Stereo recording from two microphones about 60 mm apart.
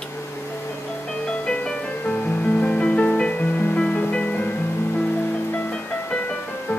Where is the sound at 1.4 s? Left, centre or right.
Centre.